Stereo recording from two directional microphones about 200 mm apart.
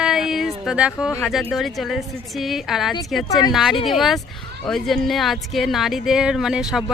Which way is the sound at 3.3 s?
20° left (ahead or behind).